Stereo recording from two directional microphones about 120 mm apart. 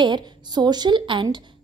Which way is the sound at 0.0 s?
35° right (ahead or behind).